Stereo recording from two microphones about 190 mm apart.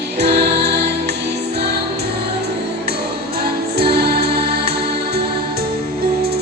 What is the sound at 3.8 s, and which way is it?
Music, 55° right (ahead or behind).